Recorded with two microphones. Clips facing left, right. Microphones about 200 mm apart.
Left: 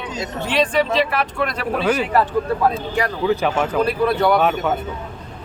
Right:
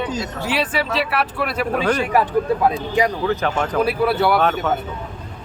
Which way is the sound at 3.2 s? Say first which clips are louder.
Left 2 dB; 10° left (ahead or behind).